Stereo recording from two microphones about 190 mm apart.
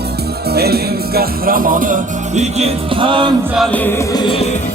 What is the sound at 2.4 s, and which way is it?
Speech, 35° right (ahead or behind).